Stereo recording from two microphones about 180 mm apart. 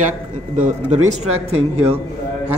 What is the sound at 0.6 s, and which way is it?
Speech, 40° right (ahead or behind).